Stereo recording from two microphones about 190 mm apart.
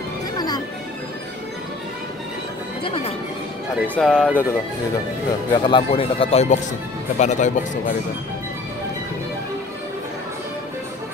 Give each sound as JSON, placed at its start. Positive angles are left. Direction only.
{"t": 2.8, "sound": "speech", "side_deg": 30}
{"t": 3.8, "sound": "speech", "side_deg": 5}
{"t": 5.6, "sound": "speech", "side_deg": 25}